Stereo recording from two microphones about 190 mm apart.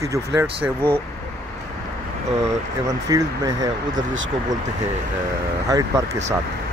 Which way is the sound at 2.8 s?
20° right (ahead or behind).